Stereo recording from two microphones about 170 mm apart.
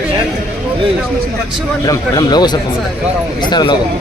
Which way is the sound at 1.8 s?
25° left (ahead or behind).